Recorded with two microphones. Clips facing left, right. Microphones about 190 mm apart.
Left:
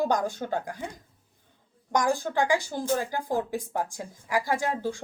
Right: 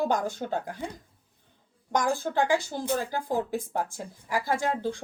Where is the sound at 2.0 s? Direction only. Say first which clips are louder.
Even; 15° left (ahead or behind).